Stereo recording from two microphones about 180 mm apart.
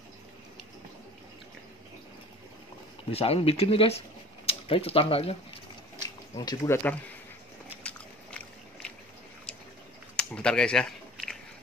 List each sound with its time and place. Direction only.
3.1 s speech: 35° left (ahead or behind)
6.3 s speech: 20° left (ahead or behind)
10.1 s a sound: 5° left (ahead or behind)